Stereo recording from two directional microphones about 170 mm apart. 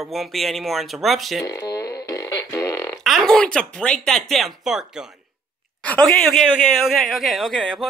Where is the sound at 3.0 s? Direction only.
Centre (ahead or behind).